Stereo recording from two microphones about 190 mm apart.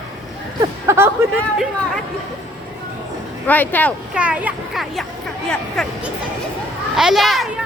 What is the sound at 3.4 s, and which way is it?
Speech, 10° left (ahead or behind).